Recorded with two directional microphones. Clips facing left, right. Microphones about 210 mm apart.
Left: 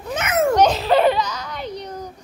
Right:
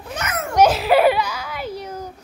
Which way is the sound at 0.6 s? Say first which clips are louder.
Right 5 dB; 10° right (ahead or behind).